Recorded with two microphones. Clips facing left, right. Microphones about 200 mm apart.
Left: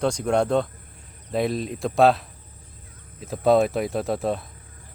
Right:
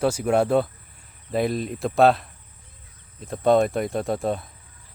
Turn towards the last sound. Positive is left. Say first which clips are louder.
# even
turn(degrees=0)  # may be behind; listen again after turning